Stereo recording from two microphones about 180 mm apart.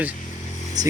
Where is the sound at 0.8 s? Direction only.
20° right (ahead or behind).